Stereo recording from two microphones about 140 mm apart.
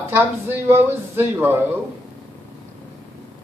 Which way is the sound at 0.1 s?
15° right (ahead or behind).